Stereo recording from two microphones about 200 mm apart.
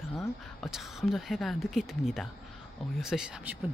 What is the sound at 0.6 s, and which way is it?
Speech, centre (ahead or behind).